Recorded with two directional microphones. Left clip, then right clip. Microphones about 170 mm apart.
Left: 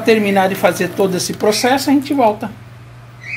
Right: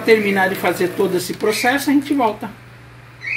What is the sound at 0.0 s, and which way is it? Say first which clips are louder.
Speech: left 2 dB; 60° left (ahead or behind).